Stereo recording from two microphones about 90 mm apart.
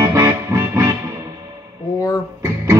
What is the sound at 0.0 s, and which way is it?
Music, 30° right (ahead or behind).